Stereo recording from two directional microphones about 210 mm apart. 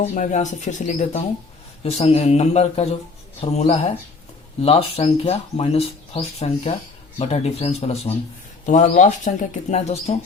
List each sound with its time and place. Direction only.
0.0 s speech: 35° left (ahead or behind)